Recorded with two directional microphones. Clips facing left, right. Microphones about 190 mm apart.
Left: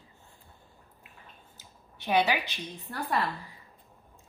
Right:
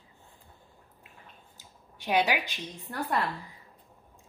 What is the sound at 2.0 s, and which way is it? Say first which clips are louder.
Speech: left 1 dB; 15° right (ahead or behind).